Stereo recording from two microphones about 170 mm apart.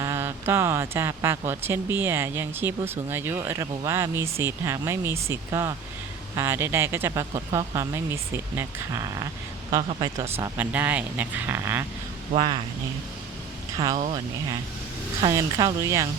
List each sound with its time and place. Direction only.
0.0 s speech: 15° right (ahead or behind)
12.4 s speech: 30° right (ahead or behind)
13.9 s speech: 45° right (ahead or behind)
15.2 s speech: 20° right (ahead or behind)